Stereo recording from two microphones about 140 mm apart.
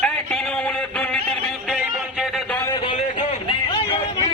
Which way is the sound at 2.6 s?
35° left (ahead or behind).